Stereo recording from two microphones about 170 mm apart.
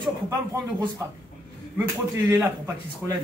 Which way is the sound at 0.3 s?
20° right (ahead or behind).